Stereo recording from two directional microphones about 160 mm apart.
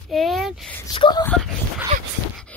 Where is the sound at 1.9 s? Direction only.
50° right (ahead or behind).